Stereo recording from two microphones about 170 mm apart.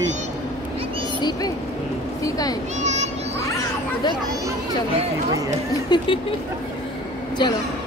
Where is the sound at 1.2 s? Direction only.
25° left (ahead or behind).